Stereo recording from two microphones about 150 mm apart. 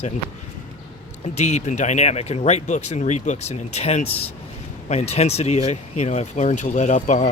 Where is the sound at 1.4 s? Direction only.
50° left (ahead or behind).